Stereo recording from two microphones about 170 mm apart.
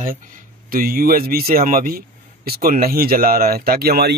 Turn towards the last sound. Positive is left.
turn(degrees=-65)  # may be behind; listen again after turning